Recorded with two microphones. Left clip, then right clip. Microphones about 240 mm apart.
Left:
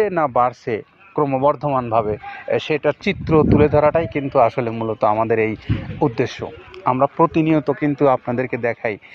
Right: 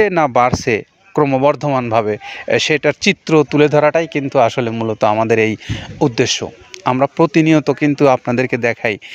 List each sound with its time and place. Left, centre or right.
0.0 s speech: right